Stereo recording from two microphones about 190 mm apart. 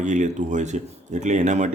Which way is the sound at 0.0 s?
40° right (ahead or behind).